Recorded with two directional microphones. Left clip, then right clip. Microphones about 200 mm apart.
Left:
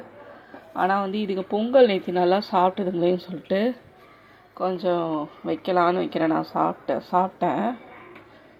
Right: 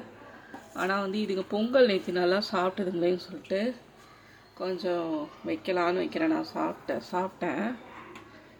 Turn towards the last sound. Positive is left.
turn(degrees=10)  # may be behind; listen again after turning